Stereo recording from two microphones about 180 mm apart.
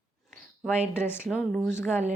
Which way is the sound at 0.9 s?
10° left (ahead or behind).